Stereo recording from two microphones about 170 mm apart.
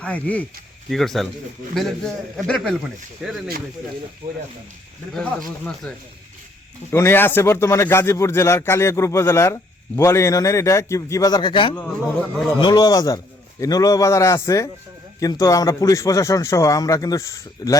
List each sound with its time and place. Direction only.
0.0 s a man's voice: 10° left (ahead or behind)
5.1 s a man's voice: 5° left (ahead or behind)
6.9 s a man's voice: 15° left (ahead or behind)